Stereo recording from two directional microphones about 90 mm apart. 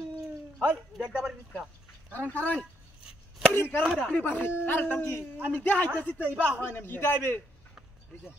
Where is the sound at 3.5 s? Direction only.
25° left (ahead or behind).